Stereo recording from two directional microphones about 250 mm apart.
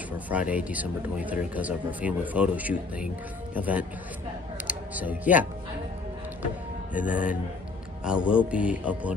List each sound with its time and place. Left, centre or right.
0.3 s speech: centre
7.1 s speech: centre